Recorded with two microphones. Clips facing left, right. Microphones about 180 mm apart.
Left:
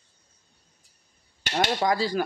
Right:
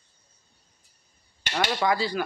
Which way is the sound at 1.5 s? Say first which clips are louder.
Left 1 dB; 35° left (ahead or behind).